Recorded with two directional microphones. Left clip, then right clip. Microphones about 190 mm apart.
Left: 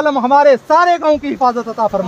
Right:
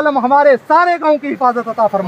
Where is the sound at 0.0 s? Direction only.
5° right (ahead or behind).